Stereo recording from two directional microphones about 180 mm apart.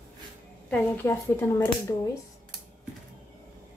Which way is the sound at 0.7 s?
15° left (ahead or behind).